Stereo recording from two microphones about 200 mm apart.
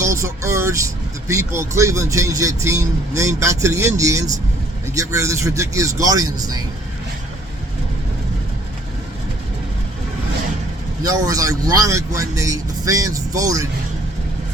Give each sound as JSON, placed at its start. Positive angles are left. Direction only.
{"t": 0.0, "sound": "speech", "side_deg": -15}
{"t": 11.0, "sound": "speech", "side_deg": -20}